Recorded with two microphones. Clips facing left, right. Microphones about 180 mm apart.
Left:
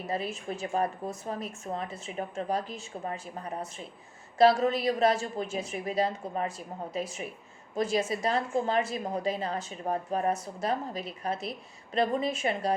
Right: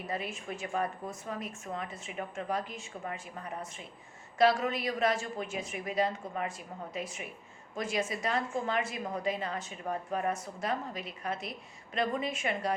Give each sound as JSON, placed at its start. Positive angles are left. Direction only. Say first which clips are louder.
{"t": 0.1, "sound": "a woman's voice", "louder": "left 5 dB", "side_deg": 35}
{"t": 7.8, "sound": "a woman's voice", "louder": "left 5 dB", "side_deg": 35}